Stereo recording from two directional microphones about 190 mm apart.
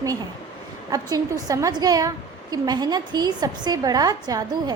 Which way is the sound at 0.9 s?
20° right (ahead or behind).